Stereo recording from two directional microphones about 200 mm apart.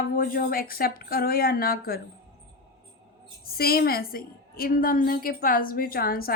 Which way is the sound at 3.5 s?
50° left (ahead or behind).